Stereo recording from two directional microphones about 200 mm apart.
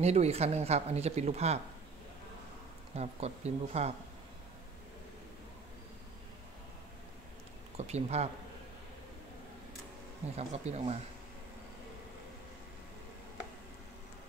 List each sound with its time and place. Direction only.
0.0 s speech: 30° right (ahead or behind)
3.0 s speech: 35° right (ahead or behind)
7.7 s speech: 30° right (ahead or behind)
10.3 s speech: 35° right (ahead or behind)